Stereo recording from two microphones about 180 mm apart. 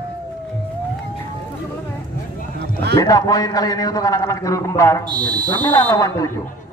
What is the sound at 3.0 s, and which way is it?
A man's voice, 20° left (ahead or behind).